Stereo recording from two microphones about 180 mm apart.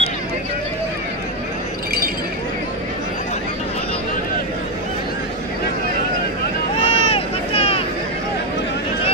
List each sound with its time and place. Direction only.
6.8 s vehicle: 35° left (ahead or behind)